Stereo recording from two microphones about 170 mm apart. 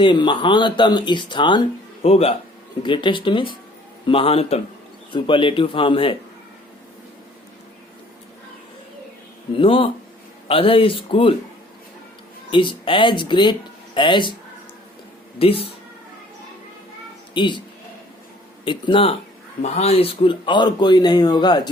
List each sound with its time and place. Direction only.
0.0 s a man's voice: 30° left (ahead or behind)
9.6 s speech: 30° left (ahead or behind)
12.5 s speech: 30° left (ahead or behind)
15.4 s speech: 35° left (ahead or behind)
17.3 s speech: 30° left (ahead or behind)
18.6 s a man's voice: 30° left (ahead or behind)